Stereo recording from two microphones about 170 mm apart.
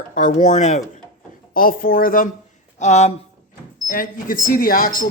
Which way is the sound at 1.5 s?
55° left (ahead or behind).